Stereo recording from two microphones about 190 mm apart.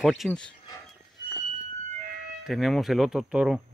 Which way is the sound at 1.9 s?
40° right (ahead or behind).